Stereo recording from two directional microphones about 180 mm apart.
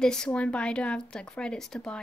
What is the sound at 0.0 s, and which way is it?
A woman's voice, 5° left (ahead or behind).